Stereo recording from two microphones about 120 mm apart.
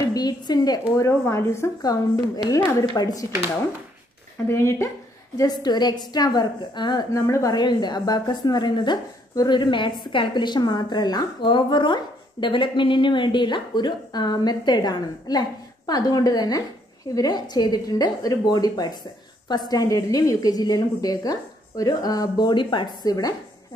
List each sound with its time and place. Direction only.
0.1 s a woman's voice: 35° left (ahead or behind)
4.5 s speech: 25° left (ahead or behind)
5.4 s a woman's voice: 35° left (ahead or behind)
7.2 s a woman's voice: 25° left (ahead or behind)